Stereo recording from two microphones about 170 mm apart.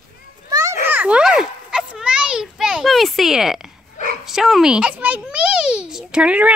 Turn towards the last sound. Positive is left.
turn(degrees=-5)  # may be behind; listen again after turning